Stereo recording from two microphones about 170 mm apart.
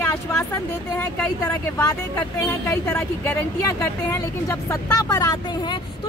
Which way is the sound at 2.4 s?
15° left (ahead or behind).